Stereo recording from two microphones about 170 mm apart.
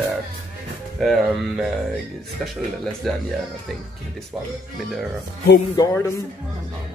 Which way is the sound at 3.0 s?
Centre (ahead or behind).